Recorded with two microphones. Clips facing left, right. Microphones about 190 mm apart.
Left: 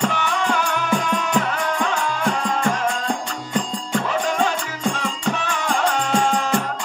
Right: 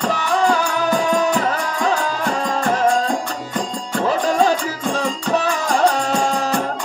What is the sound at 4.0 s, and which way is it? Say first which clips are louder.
Music: right 7 dB; 35° right (ahead or behind).